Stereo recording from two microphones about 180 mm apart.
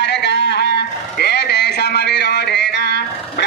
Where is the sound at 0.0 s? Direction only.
75° left (ahead or behind).